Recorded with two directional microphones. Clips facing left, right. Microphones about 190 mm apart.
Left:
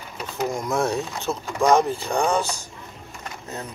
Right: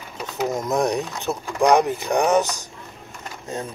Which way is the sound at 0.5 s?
20° right (ahead or behind).